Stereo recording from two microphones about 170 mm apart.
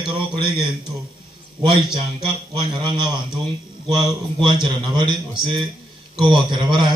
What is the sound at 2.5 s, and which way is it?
Speech, 25° right (ahead or behind).